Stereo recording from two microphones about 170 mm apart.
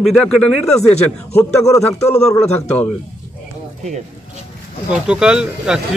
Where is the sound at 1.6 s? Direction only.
20° left (ahead or behind).